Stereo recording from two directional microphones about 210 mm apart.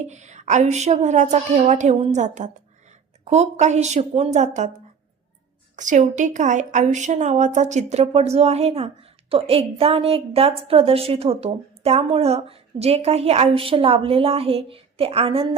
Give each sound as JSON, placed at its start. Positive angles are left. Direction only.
{"t": 0.0, "sound": "a woman's voice", "side_deg": -35}
{"t": 5.7, "sound": "a woman's voice", "side_deg": -35}